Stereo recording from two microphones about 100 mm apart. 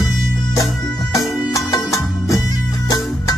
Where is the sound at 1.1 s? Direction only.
35° left (ahead or behind).